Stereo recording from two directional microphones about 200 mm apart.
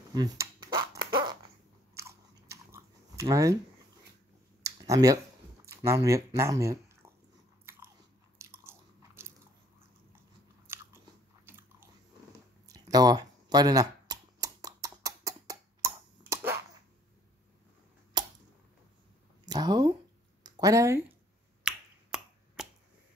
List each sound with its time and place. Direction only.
0.1 s speech: 20° right (ahead or behind)
0.9 s fart: 20° right (ahead or behind)
2.0 s biting: 15° right (ahead or behind)
4.6 s a sound: 15° right (ahead or behind)
5.8 s speech: 15° right (ahead or behind)
7.7 s biting: 10° right (ahead or behind)
11.4 s biting: 10° right (ahead or behind)
12.6 s a sound: 15° right (ahead or behind)
19.4 s a sound: 20° right (ahead or behind)
21.6 s finger snapping: 5° right (ahead or behind)